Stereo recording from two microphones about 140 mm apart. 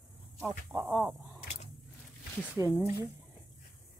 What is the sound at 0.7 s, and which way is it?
Speech, 20° right (ahead or behind).